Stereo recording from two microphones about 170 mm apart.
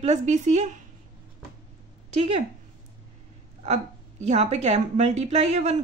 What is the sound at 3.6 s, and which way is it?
A woman's voice, 40° right (ahead or behind).